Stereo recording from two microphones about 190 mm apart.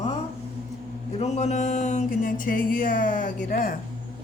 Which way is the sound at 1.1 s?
35° left (ahead or behind).